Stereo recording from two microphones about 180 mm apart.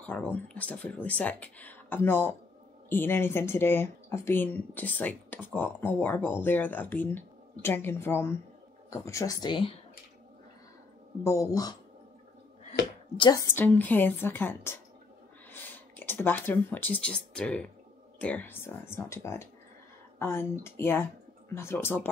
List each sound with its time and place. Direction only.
0.0 s speech: 5° left (ahead or behind); by 9.7 s 25° left (ahead or behind)
11.2 s speech: 15° left (ahead or behind)
13.2 s speech: 20° left (ahead or behind)